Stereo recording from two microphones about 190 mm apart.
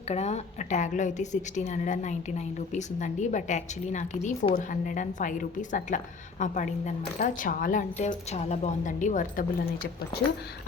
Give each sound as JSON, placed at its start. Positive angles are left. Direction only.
{"t": 0.1, "sound": "a woman's voice", "side_deg": 35}